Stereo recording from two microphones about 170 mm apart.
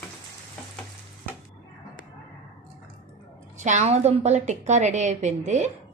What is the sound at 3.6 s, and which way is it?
A woman's voice, 45° right (ahead or behind).